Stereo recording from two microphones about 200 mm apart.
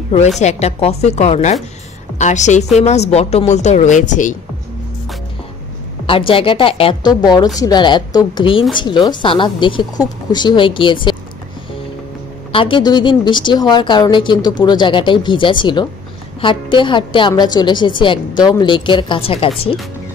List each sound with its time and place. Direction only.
0.4 s speech: 35° left (ahead or behind)
6.0 s a woman's voice: 25° left (ahead or behind)
12.5 s a woman's voice: 25° left (ahead or behind)